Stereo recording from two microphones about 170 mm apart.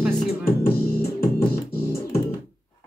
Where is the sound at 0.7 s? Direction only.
65° left (ahead or behind).